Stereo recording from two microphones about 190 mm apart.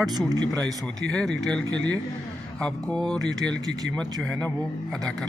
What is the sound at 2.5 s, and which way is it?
Speech, 5° left (ahead or behind).